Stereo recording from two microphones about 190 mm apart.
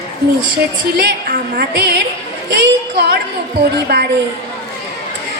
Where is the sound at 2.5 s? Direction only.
60° right (ahead or behind).